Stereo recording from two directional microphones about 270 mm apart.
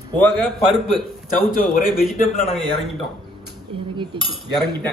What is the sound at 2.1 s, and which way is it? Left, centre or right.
Speech, left.